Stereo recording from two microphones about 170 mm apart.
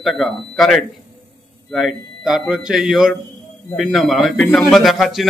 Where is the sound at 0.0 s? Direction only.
Centre (ahead or behind).